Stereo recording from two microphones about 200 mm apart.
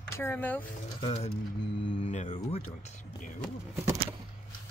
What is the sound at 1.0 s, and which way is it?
Speech, 25° left (ahead or behind).